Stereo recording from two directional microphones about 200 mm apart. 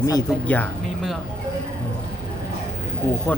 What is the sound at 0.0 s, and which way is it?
Speech, 15° left (ahead or behind).